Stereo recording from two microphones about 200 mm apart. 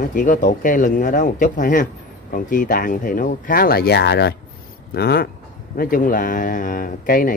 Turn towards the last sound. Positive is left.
turn(degrees=45)  # may be behind; listen again after turning